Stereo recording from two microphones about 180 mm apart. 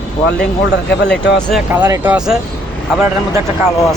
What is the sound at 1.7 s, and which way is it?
Speech, 10° right (ahead or behind).